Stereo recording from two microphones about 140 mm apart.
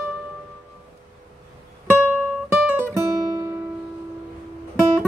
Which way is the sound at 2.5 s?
10° right (ahead or behind).